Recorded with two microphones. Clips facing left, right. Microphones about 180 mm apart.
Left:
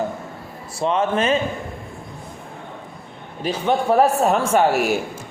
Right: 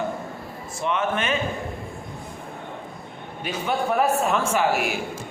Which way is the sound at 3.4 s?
35° left (ahead or behind).